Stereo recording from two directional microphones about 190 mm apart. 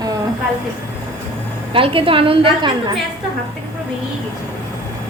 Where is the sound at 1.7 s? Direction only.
30° right (ahead or behind).